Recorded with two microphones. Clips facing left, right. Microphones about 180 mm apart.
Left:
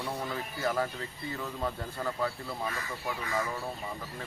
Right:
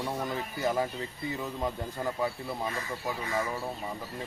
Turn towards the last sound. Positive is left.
turn(degrees=-20)  # may be behind; listen again after turning